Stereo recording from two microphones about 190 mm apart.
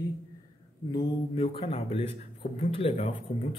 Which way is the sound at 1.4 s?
30° left (ahead or behind).